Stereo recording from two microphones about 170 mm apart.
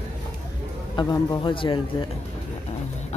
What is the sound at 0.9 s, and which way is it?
Speech, 25° left (ahead or behind).